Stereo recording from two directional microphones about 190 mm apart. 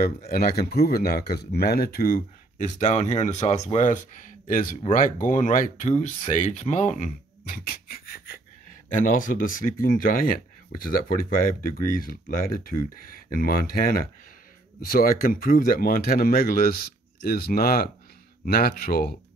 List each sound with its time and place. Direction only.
0.0 s a man's voice: 55° left (ahead or behind)